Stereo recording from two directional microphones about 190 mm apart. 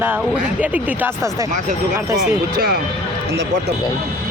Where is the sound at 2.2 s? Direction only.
55° right (ahead or behind).